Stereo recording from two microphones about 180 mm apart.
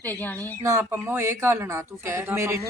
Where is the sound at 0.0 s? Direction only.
10° left (ahead or behind).